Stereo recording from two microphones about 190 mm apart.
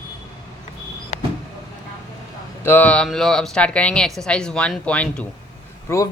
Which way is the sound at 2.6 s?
10° left (ahead or behind).